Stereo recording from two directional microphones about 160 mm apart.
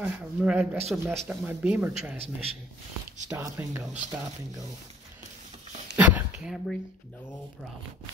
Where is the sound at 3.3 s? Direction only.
20° right (ahead or behind).